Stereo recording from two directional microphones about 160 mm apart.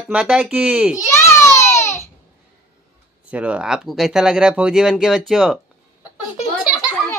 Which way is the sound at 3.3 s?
10° right (ahead or behind).